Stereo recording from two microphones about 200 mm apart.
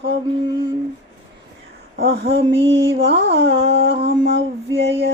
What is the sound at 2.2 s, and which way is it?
Speech, 30° right (ahead or behind).